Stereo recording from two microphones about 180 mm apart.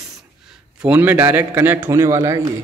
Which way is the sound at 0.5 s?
5° right (ahead or behind).